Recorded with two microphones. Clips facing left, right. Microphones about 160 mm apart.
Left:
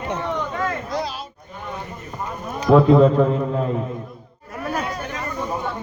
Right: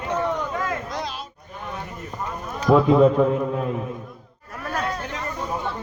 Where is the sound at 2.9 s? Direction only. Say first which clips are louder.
Left 2 dB; 5° right (ahead or behind).